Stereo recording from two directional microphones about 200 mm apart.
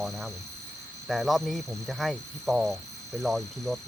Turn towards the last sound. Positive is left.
turn(degrees=0)  # may be behind; listen again after turning